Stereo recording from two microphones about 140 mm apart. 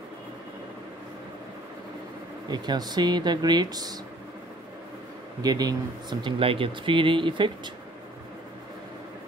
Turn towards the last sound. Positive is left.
turn(degrees=-35)  # may be behind; listen again after turning